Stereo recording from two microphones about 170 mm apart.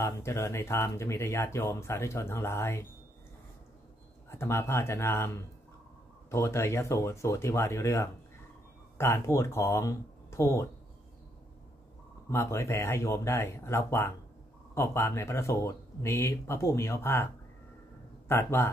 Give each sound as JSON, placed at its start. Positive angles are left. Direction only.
{"t": 0.0, "sound": "speech", "side_deg": 15}
{"t": 4.3, "sound": "speech", "side_deg": 15}
{"t": 12.3, "sound": "speech", "side_deg": 15}
{"t": 18.3, "sound": "speech", "side_deg": 15}